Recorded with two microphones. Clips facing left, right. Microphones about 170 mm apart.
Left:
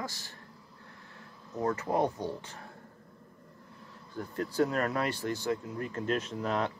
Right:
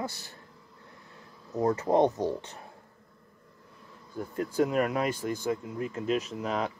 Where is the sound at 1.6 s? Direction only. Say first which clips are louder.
Right 5 dB; 30° right (ahead or behind).